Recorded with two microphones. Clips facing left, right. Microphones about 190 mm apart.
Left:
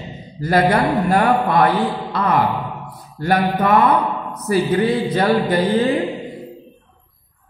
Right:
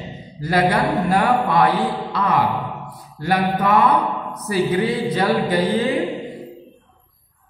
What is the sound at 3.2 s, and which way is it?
A man's voice, 50° left (ahead or behind).